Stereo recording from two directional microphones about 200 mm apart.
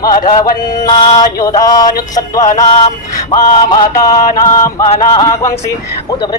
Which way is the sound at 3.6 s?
20° left (ahead or behind).